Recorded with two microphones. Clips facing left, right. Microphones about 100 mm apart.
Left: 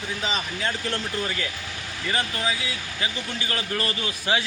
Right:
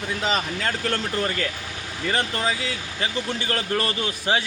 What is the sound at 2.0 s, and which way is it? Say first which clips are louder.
Speech: right 3 dB; 35° right (ahead or behind).